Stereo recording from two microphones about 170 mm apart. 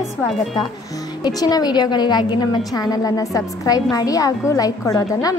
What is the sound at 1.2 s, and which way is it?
A woman's voice, 25° left (ahead or behind).